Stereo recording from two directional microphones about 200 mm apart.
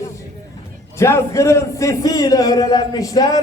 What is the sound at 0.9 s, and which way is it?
A man's voice, 15° left (ahead or behind).